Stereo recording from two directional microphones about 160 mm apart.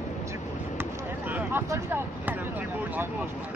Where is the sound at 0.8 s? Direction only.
10° right (ahead or behind).